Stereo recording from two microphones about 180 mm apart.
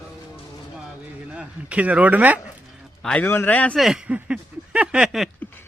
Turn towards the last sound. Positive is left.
turn(degrees=-5)  # may be behind; listen again after turning